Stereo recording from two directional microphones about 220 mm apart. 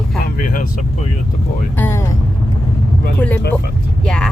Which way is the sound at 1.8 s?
10° left (ahead or behind).